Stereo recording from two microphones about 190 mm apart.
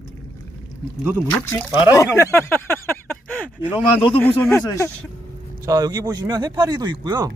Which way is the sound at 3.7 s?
30° left (ahead or behind).